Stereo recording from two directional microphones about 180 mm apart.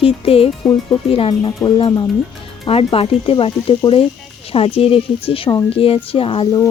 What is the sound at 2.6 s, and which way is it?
Music, 30° left (ahead or behind).